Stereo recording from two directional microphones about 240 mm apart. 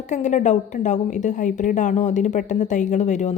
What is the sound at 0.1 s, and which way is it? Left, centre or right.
A woman's voice, left.